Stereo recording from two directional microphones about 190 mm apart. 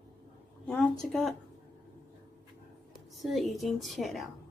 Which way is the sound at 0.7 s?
5° left (ahead or behind).